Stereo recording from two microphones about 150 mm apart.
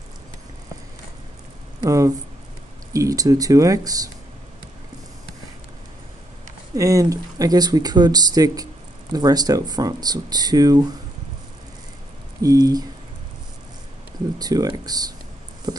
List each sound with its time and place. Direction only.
1.8 s speech: 25° right (ahead or behind)
6.7 s speech: 20° right (ahead or behind)
12.4 s speech: 25° right (ahead or behind)
14.4 s speech: 25° right (ahead or behind)